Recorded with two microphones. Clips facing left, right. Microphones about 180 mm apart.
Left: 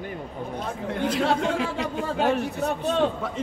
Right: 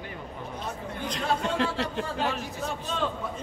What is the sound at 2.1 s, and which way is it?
Speech, 60° left (ahead or behind).